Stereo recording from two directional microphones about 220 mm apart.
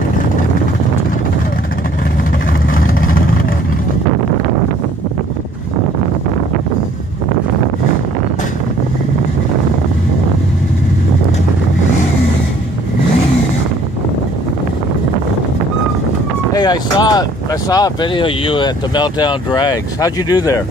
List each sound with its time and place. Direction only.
3.0 s vehicle: 40° left (ahead or behind)
16.5 s speech: 20° left (ahead or behind)